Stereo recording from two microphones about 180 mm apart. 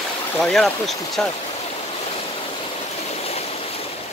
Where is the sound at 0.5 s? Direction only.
Centre (ahead or behind).